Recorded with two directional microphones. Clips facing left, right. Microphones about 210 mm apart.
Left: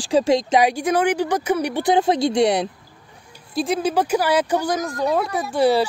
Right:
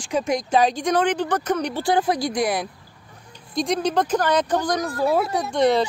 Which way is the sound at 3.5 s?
5° left (ahead or behind).